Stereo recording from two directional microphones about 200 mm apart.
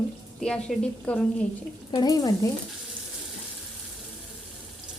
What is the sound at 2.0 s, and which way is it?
Speech, 20° left (ahead or behind).